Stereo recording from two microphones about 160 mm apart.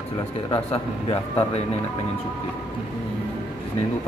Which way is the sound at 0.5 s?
35° left (ahead or behind).